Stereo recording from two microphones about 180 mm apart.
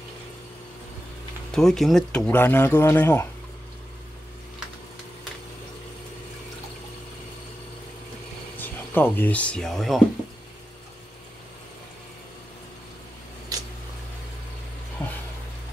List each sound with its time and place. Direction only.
1.5 s speech: centre (ahead or behind)
8.5 s speech: 10° left (ahead or behind)
13.5 s a sound: 20° right (ahead or behind)